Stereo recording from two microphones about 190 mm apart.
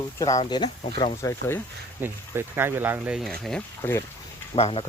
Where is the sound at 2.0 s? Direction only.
10° right (ahead or behind).